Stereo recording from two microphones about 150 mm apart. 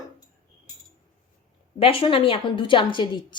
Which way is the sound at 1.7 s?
40° left (ahead or behind).